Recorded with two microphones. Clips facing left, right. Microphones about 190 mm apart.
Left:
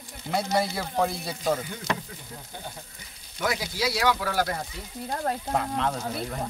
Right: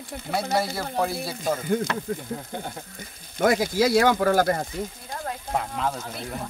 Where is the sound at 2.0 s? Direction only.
50° right (ahead or behind).